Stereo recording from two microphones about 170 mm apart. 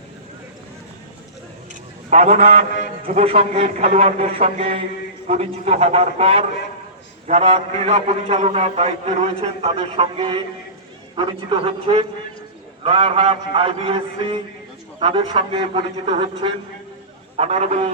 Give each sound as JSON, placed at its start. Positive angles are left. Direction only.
{"t": 2.0, "sound": "a man's voice", "side_deg": -40}